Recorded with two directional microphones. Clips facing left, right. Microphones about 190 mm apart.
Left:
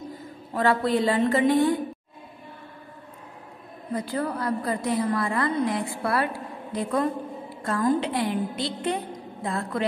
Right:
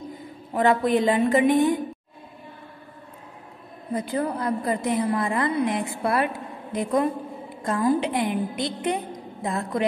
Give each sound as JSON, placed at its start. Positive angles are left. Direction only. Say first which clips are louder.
{"t": 0.1, "sound": "a woman's voice", "louder": "right 2 dB", "side_deg": -20}
{"t": 3.9, "sound": "a woman's voice", "louder": "right 2 dB", "side_deg": -20}
{"t": 7.8, "sound": "a woman's voice", "louder": "right 1 dB", "side_deg": -10}